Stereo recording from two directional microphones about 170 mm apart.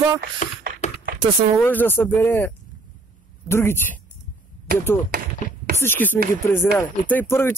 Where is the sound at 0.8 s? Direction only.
45° left (ahead or behind).